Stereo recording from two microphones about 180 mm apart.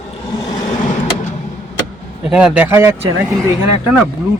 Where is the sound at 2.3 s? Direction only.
5° right (ahead or behind).